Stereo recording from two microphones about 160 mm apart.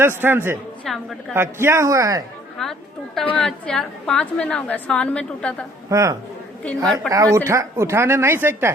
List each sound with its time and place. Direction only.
0.0 s speech: 15° right (ahead or behind)
0.9 s a woman's voice: centre (ahead or behind)
1.3 s speech: 15° right (ahead or behind)
2.6 s a woman's voice: 5° left (ahead or behind)
5.9 s a man's voice: 20° right (ahead or behind)